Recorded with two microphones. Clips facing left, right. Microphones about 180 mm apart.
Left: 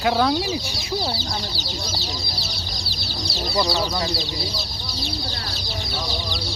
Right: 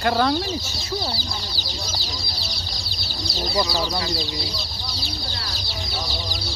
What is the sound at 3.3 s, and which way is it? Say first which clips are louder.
Speech: left 1 dB; centre (ahead or behind).